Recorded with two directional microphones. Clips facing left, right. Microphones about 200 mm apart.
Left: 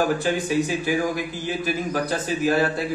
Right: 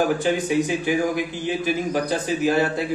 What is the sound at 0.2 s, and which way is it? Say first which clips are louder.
A man's voice: right 2 dB; 20° right (ahead or behind).